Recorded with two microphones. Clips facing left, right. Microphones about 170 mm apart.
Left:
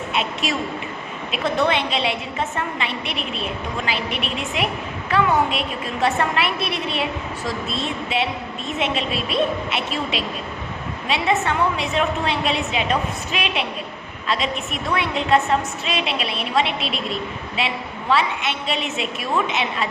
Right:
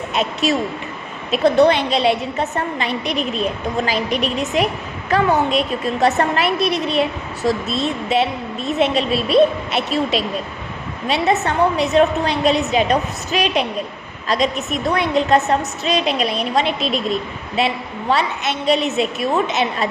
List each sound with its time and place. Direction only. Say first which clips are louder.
0.1 s a woman's voice: right 6 dB; 40° right (ahead or behind)